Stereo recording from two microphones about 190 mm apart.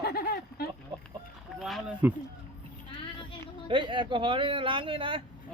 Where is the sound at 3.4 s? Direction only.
25° right (ahead or behind).